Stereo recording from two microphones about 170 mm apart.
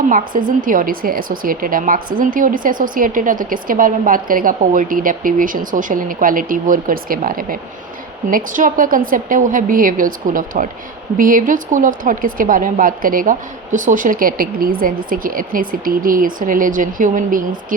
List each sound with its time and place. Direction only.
0.4 s a woman's voice: 55° right (ahead or behind)